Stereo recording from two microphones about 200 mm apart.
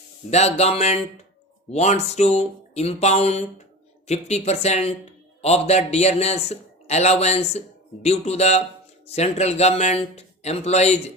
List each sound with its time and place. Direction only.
0.3 s a man's voice: 35° left (ahead or behind)